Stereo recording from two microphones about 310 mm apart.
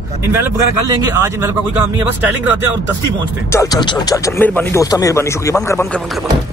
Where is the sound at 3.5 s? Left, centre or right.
Centre.